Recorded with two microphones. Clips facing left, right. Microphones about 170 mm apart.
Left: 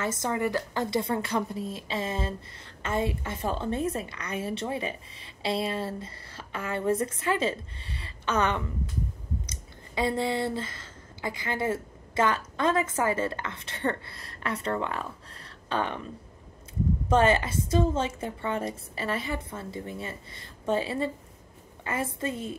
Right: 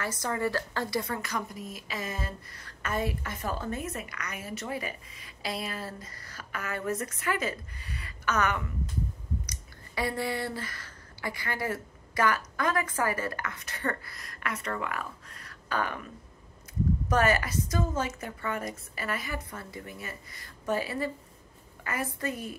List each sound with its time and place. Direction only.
0.0 s a woman's voice: 20° left (ahead or behind)
17.1 s a woman's voice: 25° left (ahead or behind)